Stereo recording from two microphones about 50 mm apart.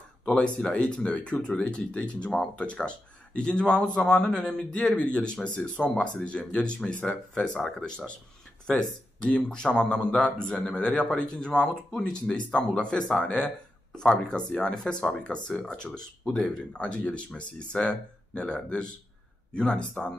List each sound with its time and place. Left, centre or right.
0.2 s speech: centre
10.4 s speech: left
10.9 s a man's voice: centre
11.1 s speech: centre
12.7 s speech: centre
13.2 s speech: left
14.6 s speech: centre